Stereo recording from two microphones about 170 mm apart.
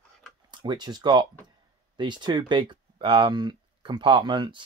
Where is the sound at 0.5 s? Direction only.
25° right (ahead or behind).